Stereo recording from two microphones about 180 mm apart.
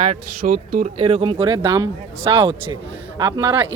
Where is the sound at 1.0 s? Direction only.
30° right (ahead or behind).